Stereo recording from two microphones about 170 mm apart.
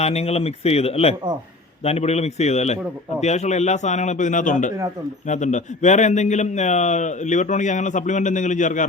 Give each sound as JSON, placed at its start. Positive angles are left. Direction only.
{"t": 0.0, "sound": "a man's voice", "side_deg": 40}